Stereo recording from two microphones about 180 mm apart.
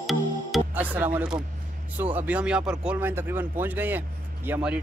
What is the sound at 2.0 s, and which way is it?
Speech, 10° right (ahead or behind).